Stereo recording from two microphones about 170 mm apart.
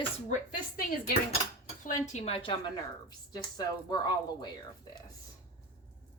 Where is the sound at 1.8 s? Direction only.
45° left (ahead or behind); by 4.5 s 25° left (ahead or behind).